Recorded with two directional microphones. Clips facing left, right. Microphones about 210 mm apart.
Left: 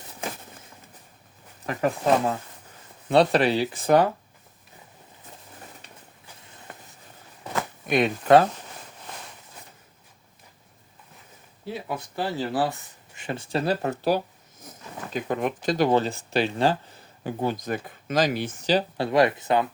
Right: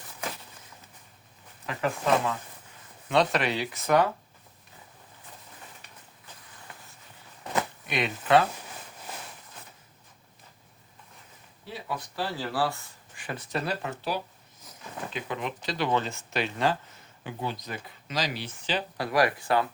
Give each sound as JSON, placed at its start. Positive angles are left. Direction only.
{"t": 1.6, "sound": "speech", "side_deg": 40}
{"t": 6.7, "sound": "a sound", "side_deg": 50}
{"t": 7.9, "sound": "speech", "side_deg": 45}
{"t": 11.9, "sound": "speech", "side_deg": 20}
{"t": 13.8, "sound": "speech", "side_deg": 45}
{"t": 17.4, "sound": "speech", "side_deg": 50}
{"t": 18.9, "sound": "speech", "side_deg": 25}